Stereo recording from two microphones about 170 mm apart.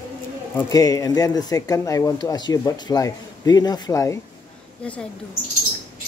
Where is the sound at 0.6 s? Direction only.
20° left (ahead or behind).